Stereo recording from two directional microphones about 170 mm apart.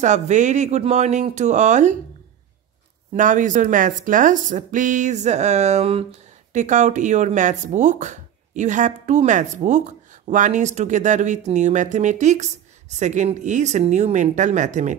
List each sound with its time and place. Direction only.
0.0 s speech: 45° right (ahead or behind)
3.2 s speech: 50° right (ahead or behind)